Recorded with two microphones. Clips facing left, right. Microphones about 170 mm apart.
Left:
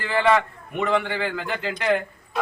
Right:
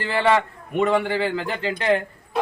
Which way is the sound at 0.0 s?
30° right (ahead or behind).